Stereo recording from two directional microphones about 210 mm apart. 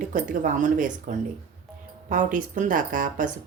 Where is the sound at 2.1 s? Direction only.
40° right (ahead or behind).